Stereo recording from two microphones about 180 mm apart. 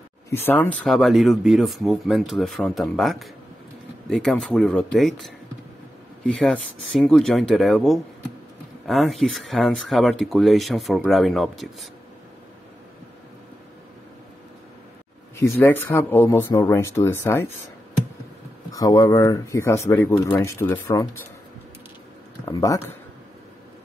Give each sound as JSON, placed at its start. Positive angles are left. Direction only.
{"t": 0.3, "sound": "speech", "side_deg": 10}
{"t": 15.3, "sound": "speech", "side_deg": 10}
{"t": 18.7, "sound": "speech", "side_deg": 20}
{"t": 22.4, "sound": "speech", "side_deg": 20}